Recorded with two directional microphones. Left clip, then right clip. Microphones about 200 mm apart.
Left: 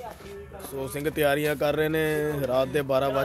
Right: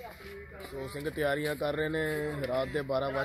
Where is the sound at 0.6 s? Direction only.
30° left (ahead or behind).